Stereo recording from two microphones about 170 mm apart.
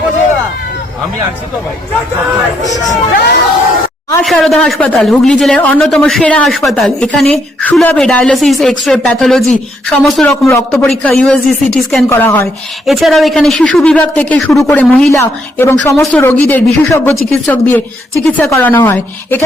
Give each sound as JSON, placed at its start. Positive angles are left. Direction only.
{"t": 2.9, "sound": "speech", "side_deg": 65}
{"t": 4.2, "sound": "a woman's voice", "side_deg": 0}
{"t": 12.0, "sound": "speech", "side_deg": 15}
{"t": 12.8, "sound": "a woman's voice", "side_deg": 0}